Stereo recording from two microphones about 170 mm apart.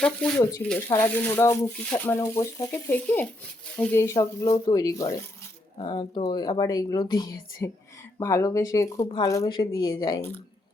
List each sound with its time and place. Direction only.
0.0 s speech: 5° left (ahead or behind); by 10.2 s 25° left (ahead or behind)